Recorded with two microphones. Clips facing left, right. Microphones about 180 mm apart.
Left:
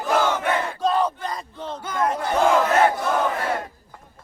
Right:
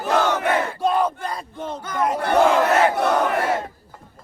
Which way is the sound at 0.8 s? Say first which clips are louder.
Even; 10° right (ahead or behind).